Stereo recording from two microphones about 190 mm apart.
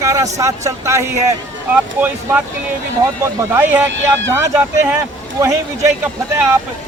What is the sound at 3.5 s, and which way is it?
Speech, 10° right (ahead or behind).